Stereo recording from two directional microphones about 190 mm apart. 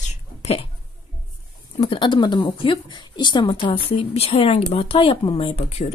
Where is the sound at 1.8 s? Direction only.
25° left (ahead or behind).